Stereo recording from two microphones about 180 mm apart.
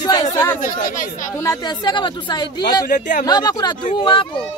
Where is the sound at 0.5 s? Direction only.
45° left (ahead or behind).